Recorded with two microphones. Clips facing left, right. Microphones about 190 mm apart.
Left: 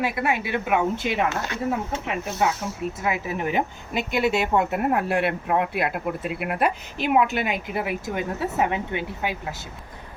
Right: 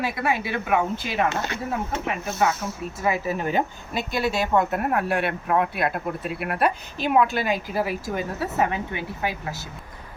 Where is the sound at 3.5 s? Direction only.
20° left (ahead or behind).